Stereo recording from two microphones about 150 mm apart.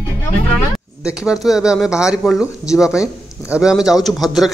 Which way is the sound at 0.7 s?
5° right (ahead or behind).